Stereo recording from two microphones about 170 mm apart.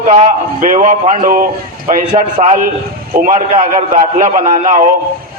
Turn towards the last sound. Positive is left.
turn(degrees=-50)  # may be behind; listen again after turning